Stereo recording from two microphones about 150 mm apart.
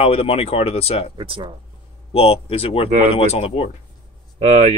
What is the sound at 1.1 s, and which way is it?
Speech, 35° right (ahead or behind).